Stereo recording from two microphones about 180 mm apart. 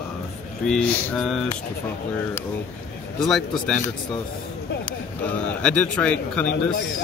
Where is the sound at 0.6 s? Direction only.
5° left (ahead or behind).